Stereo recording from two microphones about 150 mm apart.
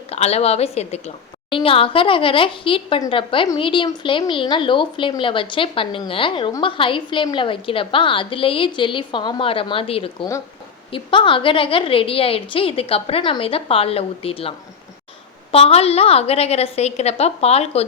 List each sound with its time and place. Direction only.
0.1 s a woman's voice: 45° left (ahead or behind)
15.5 s a woman's voice: 40° left (ahead or behind)